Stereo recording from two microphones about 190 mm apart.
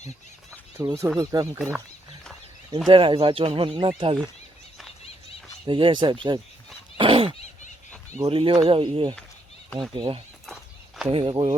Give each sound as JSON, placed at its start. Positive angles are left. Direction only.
{"t": 0.8, "sound": "speech", "side_deg": -10}
{"t": 1.5, "sound": "speech", "side_deg": -10}
{"t": 2.7, "sound": "speech", "side_deg": -25}
{"t": 5.6, "sound": "speech", "side_deg": -25}
{"t": 6.9, "sound": "a sound", "side_deg": -25}
{"t": 8.3, "sound": "speech", "side_deg": -30}
{"t": 10.4, "sound": "walk", "side_deg": 0}
{"t": 11.1, "sound": "speech", "side_deg": -25}